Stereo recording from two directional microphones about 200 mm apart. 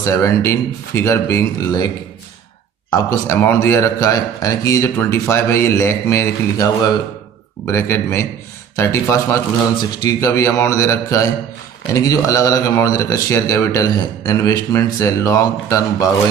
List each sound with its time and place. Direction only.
0.0 s speech: 15° left (ahead or behind)
2.9 s speech: 15° left (ahead or behind)